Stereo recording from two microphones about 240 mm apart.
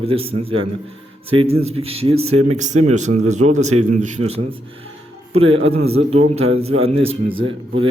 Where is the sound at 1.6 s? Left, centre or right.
Right.